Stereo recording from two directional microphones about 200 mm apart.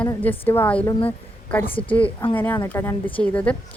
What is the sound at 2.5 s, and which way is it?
Speech, 15° left (ahead or behind).